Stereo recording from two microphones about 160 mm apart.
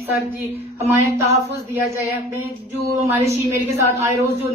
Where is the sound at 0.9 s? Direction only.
15° right (ahead or behind).